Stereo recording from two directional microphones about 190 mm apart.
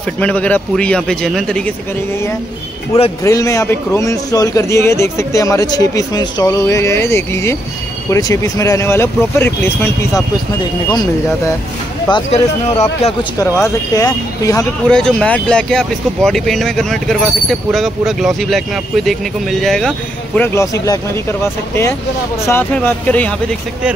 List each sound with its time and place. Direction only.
0.2 s speech: 5° left (ahead or behind)
3.3 s a man's voice: 15° left (ahead or behind)
12.1 s speech: 30° left (ahead or behind)
13.4 s a man's voice: 15° left (ahead or behind)
14.9 s speech: 5° left (ahead or behind)
20.3 s a man's voice: 15° left (ahead or behind)